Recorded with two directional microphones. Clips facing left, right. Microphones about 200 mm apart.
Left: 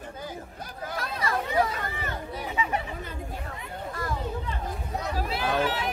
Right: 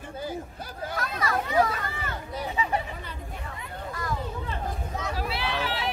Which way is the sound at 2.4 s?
35° right (ahead or behind).